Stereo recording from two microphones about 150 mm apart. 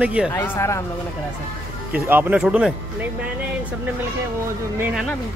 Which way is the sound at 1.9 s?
10° right (ahead or behind).